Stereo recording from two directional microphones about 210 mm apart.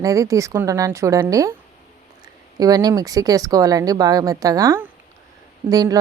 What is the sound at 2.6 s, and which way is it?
Speech, 20° right (ahead or behind).